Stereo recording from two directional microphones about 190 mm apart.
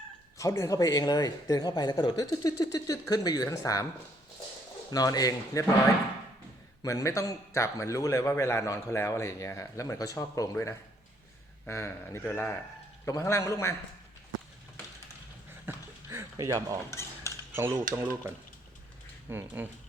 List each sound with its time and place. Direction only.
0.3 s speech: 15° left (ahead or behind)
4.9 s speech: 20° left (ahead or behind)
6.8 s a man's voice: 15° left (ahead or behind)
15.6 s a sound: 15° right (ahead or behind)
16.9 s cutlery: 15° left (ahead or behind)
17.9 s speech: 10° right (ahead or behind)